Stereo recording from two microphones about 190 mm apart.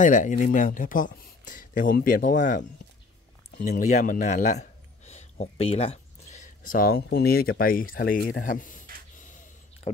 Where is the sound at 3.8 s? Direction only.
40° left (ahead or behind).